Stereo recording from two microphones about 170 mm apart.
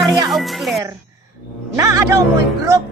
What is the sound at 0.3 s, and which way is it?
Speech, centre (ahead or behind).